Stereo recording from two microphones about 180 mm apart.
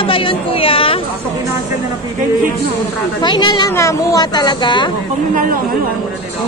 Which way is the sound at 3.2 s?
25° left (ahead or behind).